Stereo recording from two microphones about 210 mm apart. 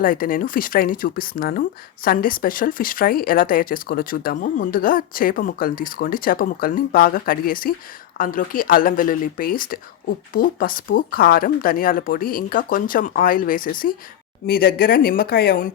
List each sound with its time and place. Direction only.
0.0 s speech: 40° left (ahead or behind)